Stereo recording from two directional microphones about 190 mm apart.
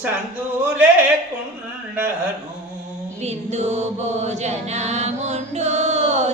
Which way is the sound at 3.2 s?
35° right (ahead or behind).